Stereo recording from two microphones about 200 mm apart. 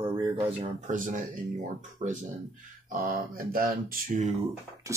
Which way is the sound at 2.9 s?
45° right (ahead or behind).